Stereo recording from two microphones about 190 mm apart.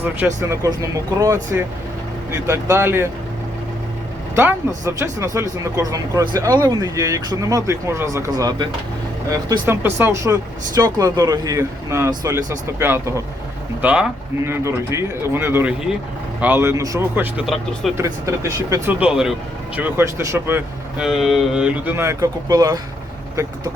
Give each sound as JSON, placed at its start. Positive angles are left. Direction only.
{"t": 0.4, "sound": "speech", "side_deg": -15}
{"t": 4.4, "sound": "speech", "side_deg": -15}
{"t": 17.9, "sound": "speech", "side_deg": -15}
{"t": 21.0, "sound": "speech", "side_deg": 0}